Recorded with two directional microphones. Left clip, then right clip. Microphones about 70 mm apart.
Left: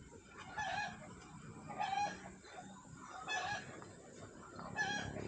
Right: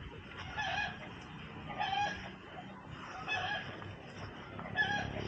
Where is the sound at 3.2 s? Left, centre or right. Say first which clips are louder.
Right 4 dB; centre.